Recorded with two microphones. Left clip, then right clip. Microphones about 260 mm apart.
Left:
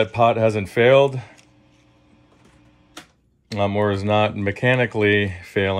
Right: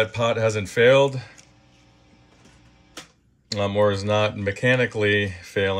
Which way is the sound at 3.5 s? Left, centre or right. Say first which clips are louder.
Even; left.